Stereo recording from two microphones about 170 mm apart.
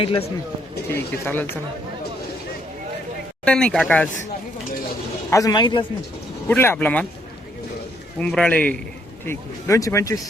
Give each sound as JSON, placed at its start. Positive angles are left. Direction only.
{"t": 0.0, "sound": "speech", "side_deg": 30}
{"t": 0.9, "sound": "speech", "side_deg": 15}
{"t": 3.4, "sound": "speech", "side_deg": 5}
{"t": 5.3, "sound": "a man's voice", "side_deg": 20}
{"t": 6.5, "sound": "speech", "side_deg": 10}
{"t": 8.2, "sound": "a man's voice", "side_deg": 5}